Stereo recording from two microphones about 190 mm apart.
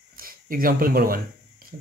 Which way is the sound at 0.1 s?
50° right (ahead or behind).